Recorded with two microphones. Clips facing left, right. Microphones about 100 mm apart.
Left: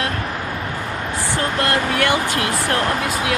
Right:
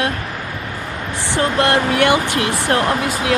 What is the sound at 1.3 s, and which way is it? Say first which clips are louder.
Speech: right 5 dB; 20° right (ahead or behind).